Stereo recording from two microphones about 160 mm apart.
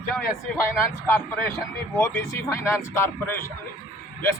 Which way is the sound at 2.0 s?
15° left (ahead or behind).